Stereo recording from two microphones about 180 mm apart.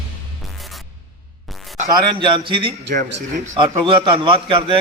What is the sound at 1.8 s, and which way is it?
Speech, 25° right (ahead or behind).